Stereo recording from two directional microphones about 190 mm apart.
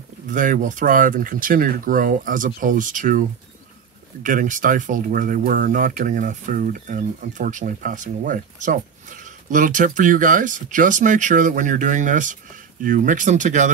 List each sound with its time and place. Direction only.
0.3 s speech: 40° right (ahead or behind)